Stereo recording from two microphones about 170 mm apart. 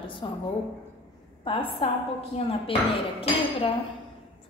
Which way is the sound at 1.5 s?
30° left (ahead or behind).